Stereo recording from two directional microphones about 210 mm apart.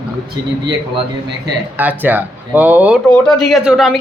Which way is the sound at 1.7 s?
10° right (ahead or behind).